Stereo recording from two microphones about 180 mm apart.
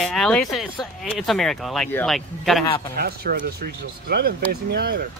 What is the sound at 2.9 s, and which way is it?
Speech, 60° right (ahead or behind).